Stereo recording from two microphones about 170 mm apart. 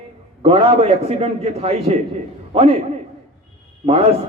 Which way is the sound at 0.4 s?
30° right (ahead or behind).